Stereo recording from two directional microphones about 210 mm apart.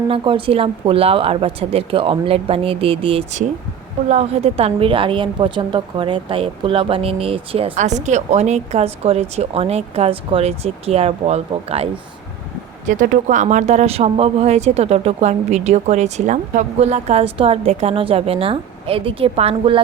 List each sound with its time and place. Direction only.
0.1 s a woman's voice: 25° right (ahead or behind)
12.9 s speech: 35° right (ahead or behind)